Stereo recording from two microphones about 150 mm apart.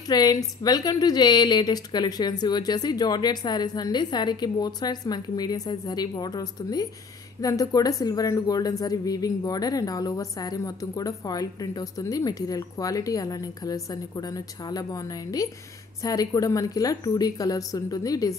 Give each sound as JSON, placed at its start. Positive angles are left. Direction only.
{"t": 0.1, "sound": "a woman's voice", "side_deg": 25}